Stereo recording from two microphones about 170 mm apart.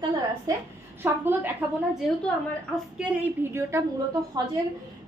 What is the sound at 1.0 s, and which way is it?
Speech, 10° right (ahead or behind).